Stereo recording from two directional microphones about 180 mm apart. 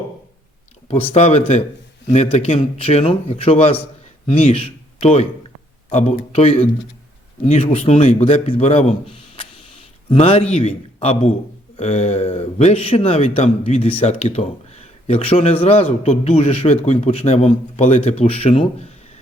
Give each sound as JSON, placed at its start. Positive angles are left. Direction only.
{"t": 0.9, "sound": "a man's voice", "side_deg": 35}